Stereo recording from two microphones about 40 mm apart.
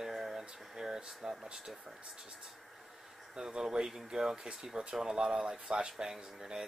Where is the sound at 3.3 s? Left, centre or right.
Centre.